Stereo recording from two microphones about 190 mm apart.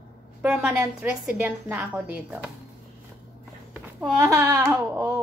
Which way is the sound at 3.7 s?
5° right (ahead or behind).